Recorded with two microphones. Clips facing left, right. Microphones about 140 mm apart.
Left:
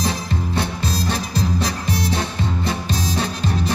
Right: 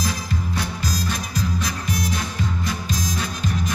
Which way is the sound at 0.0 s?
30° left (ahead or behind).